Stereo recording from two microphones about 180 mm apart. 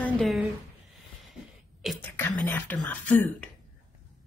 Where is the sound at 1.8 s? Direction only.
Centre (ahead or behind).